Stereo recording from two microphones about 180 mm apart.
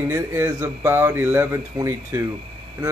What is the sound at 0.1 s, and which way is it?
A man's voice, 15° right (ahead or behind).